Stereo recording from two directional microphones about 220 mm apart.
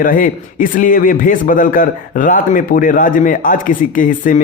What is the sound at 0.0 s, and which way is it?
A man's voice, 40° left (ahead or behind).